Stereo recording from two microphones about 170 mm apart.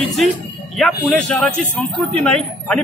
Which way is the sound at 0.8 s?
10° left (ahead or behind).